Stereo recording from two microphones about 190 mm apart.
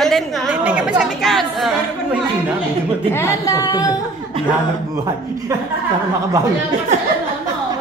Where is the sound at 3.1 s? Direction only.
15° left (ahead or behind).